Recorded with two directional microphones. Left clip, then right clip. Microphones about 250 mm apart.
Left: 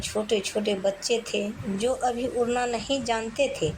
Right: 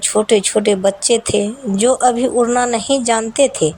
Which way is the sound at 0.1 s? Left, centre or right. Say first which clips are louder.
Right 13 dB; right.